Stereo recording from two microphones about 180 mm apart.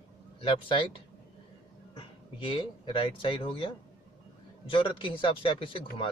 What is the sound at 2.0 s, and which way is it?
Speech, 30° left (ahead or behind).